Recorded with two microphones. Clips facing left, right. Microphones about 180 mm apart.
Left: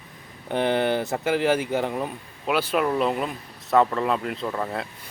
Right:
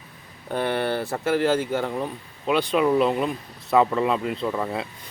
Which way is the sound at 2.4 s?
5° left (ahead or behind).